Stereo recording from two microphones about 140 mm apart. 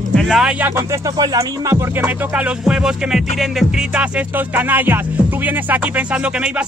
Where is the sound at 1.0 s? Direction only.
25° right (ahead or behind).